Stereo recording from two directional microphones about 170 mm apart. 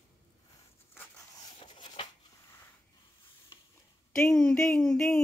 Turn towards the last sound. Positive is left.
turn(degrees=0)  # may be behind; listen again after turning